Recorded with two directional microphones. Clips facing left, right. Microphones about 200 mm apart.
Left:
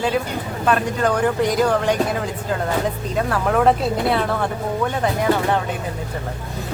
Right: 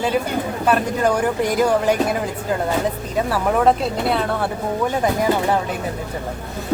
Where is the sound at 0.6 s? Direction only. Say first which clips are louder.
Even; 10° right (ahead or behind).